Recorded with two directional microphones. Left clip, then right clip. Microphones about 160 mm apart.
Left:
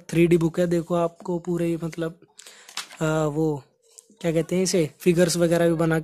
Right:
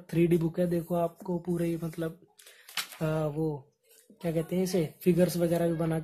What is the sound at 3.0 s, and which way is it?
Speech, 45° left (ahead or behind).